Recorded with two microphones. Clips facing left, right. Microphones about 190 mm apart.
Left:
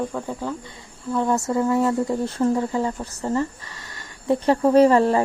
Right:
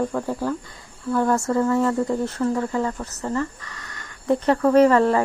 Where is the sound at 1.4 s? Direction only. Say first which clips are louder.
Even; 15° left (ahead or behind).